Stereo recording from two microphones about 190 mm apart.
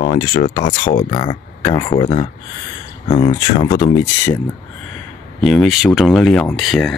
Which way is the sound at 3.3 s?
20° left (ahead or behind).